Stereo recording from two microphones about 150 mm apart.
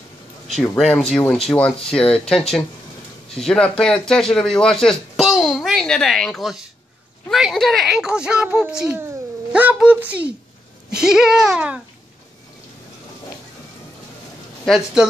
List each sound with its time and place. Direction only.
0.7 s a woman's voice: 5° left (ahead or behind)
3.3 s a man's voice: 5° left (ahead or behind)
14.6 s a woman's voice: centre (ahead or behind)